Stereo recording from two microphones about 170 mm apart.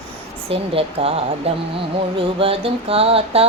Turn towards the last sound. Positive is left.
turn(degrees=-35)  # may be behind; listen again after turning